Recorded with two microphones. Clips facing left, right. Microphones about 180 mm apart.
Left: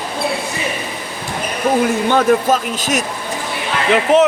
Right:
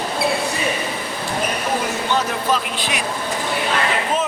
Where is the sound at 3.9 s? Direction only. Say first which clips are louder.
Left 10 dB; 70° left (ahead or behind).